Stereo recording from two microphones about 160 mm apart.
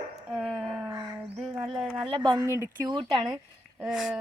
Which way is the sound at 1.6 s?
5° right (ahead or behind).